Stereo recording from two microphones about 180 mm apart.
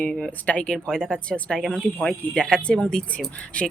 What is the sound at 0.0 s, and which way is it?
Speech, 5° left (ahead or behind).